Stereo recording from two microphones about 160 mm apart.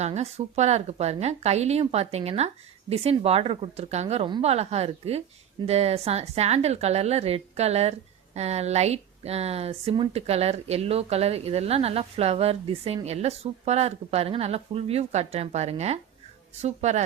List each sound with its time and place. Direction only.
0.0 s speech: 40° right (ahead or behind)